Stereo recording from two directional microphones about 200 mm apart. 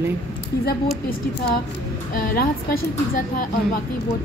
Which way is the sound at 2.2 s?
50° left (ahead or behind).